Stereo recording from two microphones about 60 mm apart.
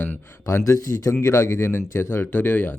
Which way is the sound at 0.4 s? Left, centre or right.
Left.